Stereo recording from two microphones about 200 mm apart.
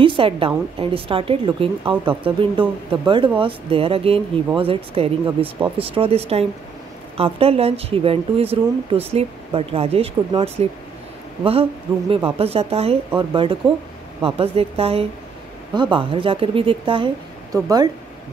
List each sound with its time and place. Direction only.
0.0 s speech: 25° right (ahead or behind)
12.4 s speech: 30° right (ahead or behind)